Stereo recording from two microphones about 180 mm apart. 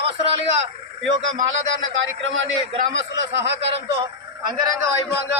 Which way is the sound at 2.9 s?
85° right.